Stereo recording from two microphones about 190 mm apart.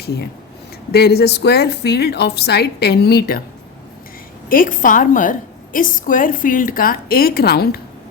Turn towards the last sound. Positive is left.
turn(degrees=55)  # may be behind; listen again after turning